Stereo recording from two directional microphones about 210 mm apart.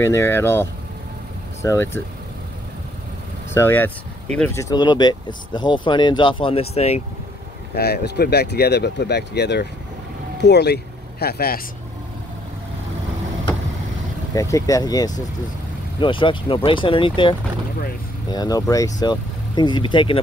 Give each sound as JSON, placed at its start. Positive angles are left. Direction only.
{"t": 0.0, "sound": "speech", "side_deg": 10}
{"t": 3.5, "sound": "speech", "side_deg": 10}
{"t": 4.6, "sound": "speech", "side_deg": 20}
{"t": 7.7, "sound": "speech", "side_deg": 50}
{"t": 14.3, "sound": "speech", "side_deg": 15}